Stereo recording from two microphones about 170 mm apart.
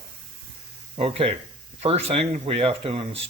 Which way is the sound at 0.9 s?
35° right (ahead or behind).